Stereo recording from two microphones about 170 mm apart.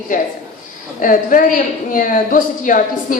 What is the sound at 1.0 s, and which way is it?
A man's voice, 50° left (ahead or behind).